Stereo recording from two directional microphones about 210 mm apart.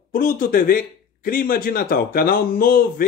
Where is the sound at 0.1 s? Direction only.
45° left (ahead or behind).